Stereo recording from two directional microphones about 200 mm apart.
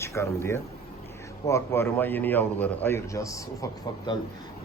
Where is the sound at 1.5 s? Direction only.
15° left (ahead or behind).